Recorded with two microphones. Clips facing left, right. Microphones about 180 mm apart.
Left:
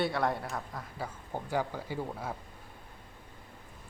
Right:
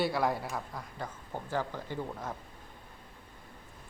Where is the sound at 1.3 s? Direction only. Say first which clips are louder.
Left 2 dB; 15° left (ahead or behind).